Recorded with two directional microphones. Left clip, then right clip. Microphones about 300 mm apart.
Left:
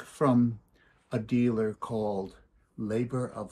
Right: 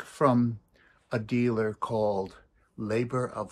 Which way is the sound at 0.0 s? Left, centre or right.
Right.